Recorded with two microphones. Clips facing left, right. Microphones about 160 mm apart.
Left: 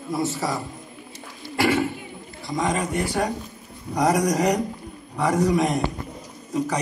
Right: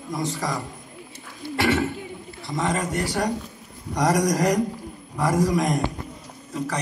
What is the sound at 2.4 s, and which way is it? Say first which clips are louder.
Speech: left 1 dB; centre (ahead or behind).